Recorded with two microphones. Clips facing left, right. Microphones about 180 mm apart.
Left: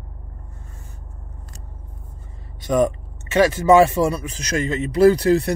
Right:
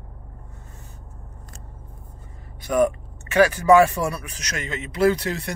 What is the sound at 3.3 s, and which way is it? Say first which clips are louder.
Speech: left 1 dB; 25° left (ahead or behind).